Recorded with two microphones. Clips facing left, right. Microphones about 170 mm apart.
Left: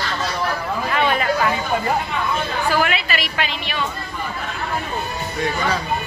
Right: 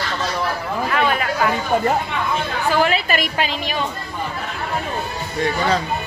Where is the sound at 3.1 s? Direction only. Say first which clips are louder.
Right 3 dB; 45° right (ahead or behind).